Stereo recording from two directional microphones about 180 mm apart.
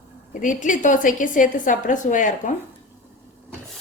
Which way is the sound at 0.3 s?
45° left (ahead or behind).